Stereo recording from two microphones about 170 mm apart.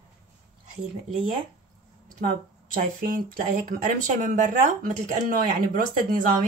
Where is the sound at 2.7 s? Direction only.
55° right (ahead or behind).